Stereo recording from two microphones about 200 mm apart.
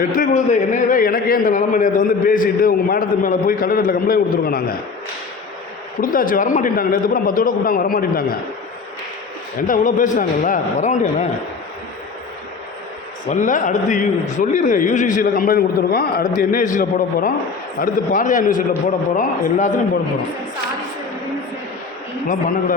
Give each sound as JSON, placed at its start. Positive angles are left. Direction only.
{"t": 0.1, "sound": "a man's voice", "side_deg": 40}
{"t": 6.0, "sound": "a man's voice", "side_deg": 45}
{"t": 9.6, "sound": "a man's voice", "side_deg": 45}
{"t": 13.2, "sound": "a man's voice", "side_deg": 40}